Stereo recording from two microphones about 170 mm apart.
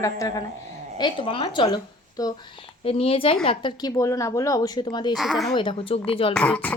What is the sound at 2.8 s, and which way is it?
Speech, 35° left (ahead or behind).